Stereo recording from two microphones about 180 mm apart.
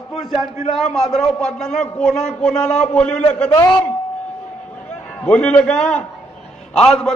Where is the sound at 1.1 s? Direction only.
Centre (ahead or behind).